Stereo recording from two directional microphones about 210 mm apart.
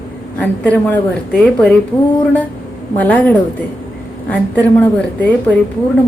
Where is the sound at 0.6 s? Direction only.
5° left (ahead or behind).